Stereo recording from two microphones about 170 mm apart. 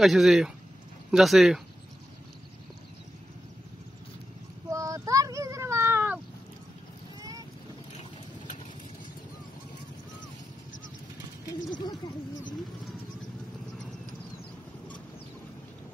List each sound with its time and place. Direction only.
0.0 s speech: centre (ahead or behind)
4.6 s child singing: 20° right (ahead or behind)
7.2 s boat: 20° right (ahead or behind)